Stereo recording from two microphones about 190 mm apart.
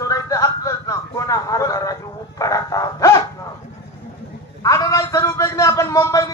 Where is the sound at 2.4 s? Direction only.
20° left (ahead or behind).